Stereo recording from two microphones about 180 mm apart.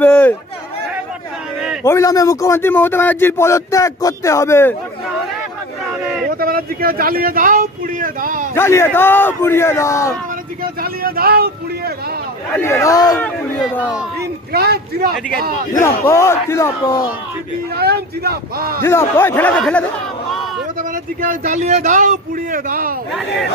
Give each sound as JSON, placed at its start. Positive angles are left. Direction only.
{"t": 0.0, "sound": "a sound", "side_deg": 5}
{"t": 1.6, "sound": "a sound", "side_deg": -5}
{"t": 1.9, "sound": "speech", "side_deg": 15}
{"t": 6.2, "sound": "speech", "side_deg": -55}
{"t": 8.5, "sound": "speech", "side_deg": 15}
{"t": 10.6, "sound": "speech", "side_deg": -55}
{"t": 12.5, "sound": "speech", "side_deg": 15}
{"t": 14.5, "sound": "speech", "side_deg": -60}
{"t": 15.8, "sound": "speech", "side_deg": 15}
{"t": 17.7, "sound": "speech", "side_deg": -60}
{"t": 18.8, "sound": "speech", "side_deg": 15}
{"t": 20.9, "sound": "speech", "side_deg": -50}